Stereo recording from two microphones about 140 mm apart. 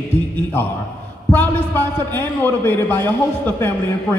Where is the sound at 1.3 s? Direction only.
15° left (ahead or behind).